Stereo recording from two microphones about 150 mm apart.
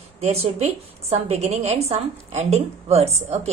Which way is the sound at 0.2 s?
45° right (ahead or behind).